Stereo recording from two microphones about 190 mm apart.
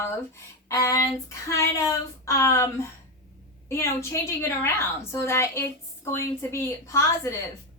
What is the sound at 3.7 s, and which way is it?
A woman's voice, 15° left (ahead or behind).